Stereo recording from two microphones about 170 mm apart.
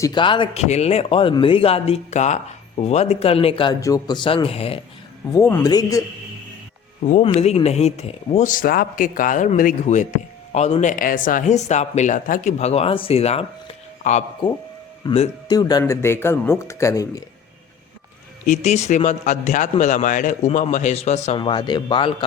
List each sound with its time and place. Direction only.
0.0 s speech: 25° left (ahead or behind)
3.8 s a man's voice: 20° left (ahead or behind)
5.3 s a man's voice: 15° left (ahead or behind)
7.0 s speech: 40° left (ahead or behind)
15.1 s a man's voice: 30° left (ahead or behind)
18.4 s speech: 45° left (ahead or behind)
21.3 s a man's voice: 30° left (ahead or behind)